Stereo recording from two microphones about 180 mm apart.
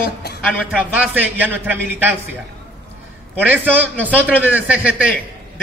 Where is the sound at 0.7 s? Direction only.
5° right (ahead or behind).